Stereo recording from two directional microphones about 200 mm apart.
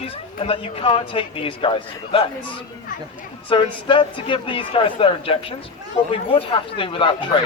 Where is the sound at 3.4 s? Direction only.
25° left (ahead or behind).